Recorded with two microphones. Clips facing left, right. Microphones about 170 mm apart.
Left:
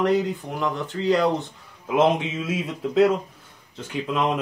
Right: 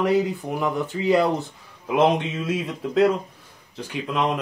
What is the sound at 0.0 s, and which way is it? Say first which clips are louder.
Speech: right 1 dB; 10° right (ahead or behind).